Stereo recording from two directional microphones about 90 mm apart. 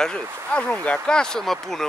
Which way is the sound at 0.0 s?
10° left (ahead or behind).